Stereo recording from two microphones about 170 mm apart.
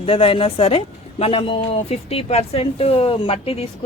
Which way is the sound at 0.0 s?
35° left (ahead or behind).